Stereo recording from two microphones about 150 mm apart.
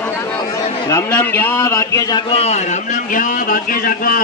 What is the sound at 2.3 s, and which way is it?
A man's voice, 45° left (ahead or behind).